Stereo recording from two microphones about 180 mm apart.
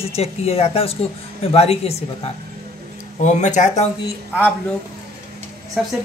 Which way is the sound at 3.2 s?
40° left (ahead or behind).